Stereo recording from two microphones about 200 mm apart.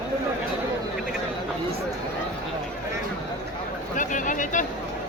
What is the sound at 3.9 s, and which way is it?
Speech, 40° left (ahead or behind).